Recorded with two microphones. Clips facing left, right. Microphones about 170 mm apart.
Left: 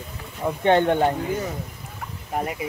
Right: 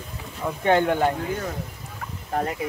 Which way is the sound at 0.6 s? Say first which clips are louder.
Left 2 dB; 25° left (ahead or behind).